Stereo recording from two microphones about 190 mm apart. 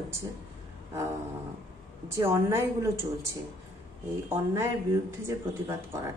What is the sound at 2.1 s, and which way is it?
Speech, 15° right (ahead or behind).